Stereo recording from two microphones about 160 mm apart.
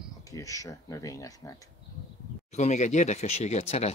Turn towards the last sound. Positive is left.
turn(degrees=45)  # may be behind; listen again after turning